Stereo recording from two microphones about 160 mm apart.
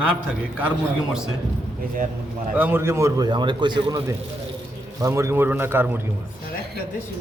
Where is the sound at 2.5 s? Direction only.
10° right (ahead or behind).